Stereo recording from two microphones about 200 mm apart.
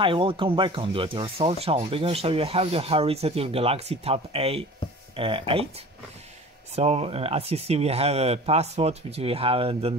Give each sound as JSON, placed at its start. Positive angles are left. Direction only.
{"t": 0.0, "sound": "speech", "side_deg": -25}
{"t": 6.7, "sound": "speech", "side_deg": -30}